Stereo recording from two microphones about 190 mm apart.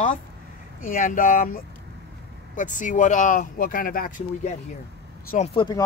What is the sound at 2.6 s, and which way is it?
Speech, 40° left (ahead or behind).